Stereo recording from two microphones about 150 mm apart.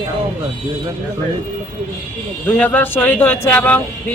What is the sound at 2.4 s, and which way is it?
Speech, 10° left (ahead or behind).